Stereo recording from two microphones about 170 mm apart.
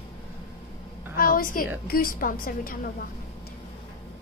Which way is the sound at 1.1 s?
55° left (ahead or behind).